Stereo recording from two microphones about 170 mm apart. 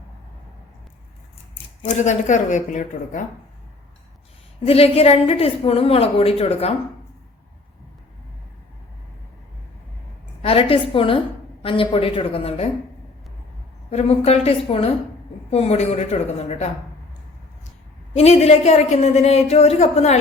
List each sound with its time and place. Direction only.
1.8 s speech: 45° left (ahead or behind)
4.6 s a woman's voice: 35° left (ahead or behind)
10.4 s a woman's voice: 35° left (ahead or behind)
13.9 s a woman's voice: 40° left (ahead or behind)
18.2 s a woman's voice: 40° left (ahead or behind)